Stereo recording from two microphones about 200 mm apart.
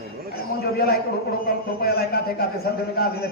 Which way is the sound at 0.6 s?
50° left (ahead or behind).